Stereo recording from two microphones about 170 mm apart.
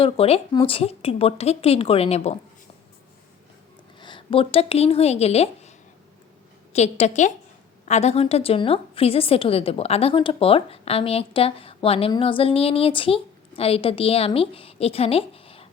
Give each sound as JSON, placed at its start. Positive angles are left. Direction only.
{"t": 0.0, "sound": "a woman's voice", "side_deg": 35}
{"t": 4.0, "sound": "speech", "side_deg": 30}
{"t": 6.7, "sound": "a woman's voice", "side_deg": 40}